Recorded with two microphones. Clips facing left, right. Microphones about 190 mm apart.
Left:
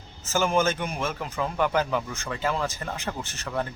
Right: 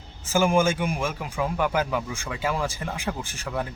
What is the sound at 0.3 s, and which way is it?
Speech, 10° right (ahead or behind).